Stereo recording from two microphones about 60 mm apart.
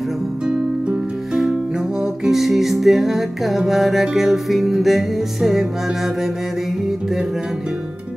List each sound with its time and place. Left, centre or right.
0.5 s music: centre
2.2 s music: centre